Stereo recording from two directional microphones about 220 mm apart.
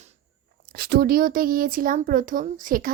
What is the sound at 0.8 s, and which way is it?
A child's voice, 40° right (ahead or behind).